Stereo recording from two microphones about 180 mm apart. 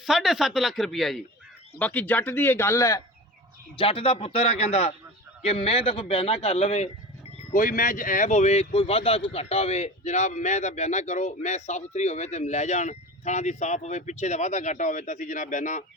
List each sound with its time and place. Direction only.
0.0 s speech: centre (ahead or behind); by 3.0 s 15° left (ahead or behind)
3.8 s speech: 30° left (ahead or behind)
7.5 s speech: 50° left (ahead or behind)